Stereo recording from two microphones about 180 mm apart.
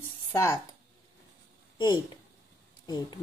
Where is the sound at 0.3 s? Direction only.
15° left (ahead or behind).